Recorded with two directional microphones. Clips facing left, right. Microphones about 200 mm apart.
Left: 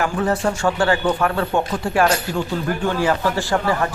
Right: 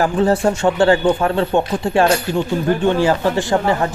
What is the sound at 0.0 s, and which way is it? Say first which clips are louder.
Speech: right 5 dB; 30° right (ahead or behind).